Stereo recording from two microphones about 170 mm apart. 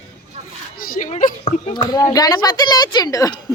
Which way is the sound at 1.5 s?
25° left (ahead or behind).